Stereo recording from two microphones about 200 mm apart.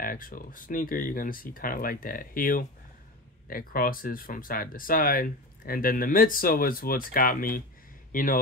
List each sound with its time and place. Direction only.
0.0 s speech: 45° left (ahead or behind)